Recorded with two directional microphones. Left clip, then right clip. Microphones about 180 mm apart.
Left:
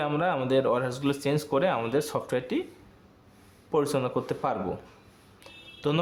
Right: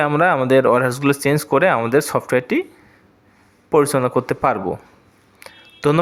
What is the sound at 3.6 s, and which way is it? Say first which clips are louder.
Speech: right 11 dB; 40° right (ahead or behind).